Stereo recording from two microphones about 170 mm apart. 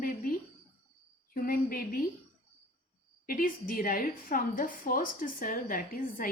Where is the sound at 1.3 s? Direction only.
55° left (ahead or behind).